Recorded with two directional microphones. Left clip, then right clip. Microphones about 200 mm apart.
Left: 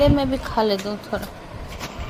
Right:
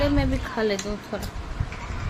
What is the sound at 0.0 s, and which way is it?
A woman's voice, 10° left (ahead or behind).